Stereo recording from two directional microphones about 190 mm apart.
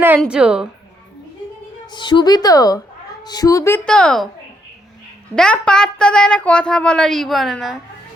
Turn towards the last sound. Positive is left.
turn(degrees=0)  # may be behind; listen again after turning